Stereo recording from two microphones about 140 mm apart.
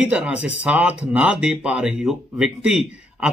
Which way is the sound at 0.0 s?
5° right (ahead or behind).